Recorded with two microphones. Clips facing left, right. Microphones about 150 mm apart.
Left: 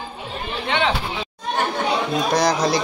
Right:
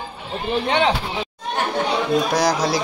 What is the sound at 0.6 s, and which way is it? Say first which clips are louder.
Speech: right 2 dB; 40° right (ahead or behind).